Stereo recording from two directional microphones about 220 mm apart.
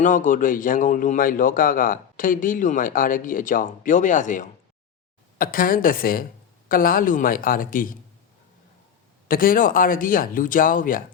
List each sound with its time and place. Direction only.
0.0 s a man's voice: 35° left (ahead or behind)
9.2 s a man's voice: 40° left (ahead or behind)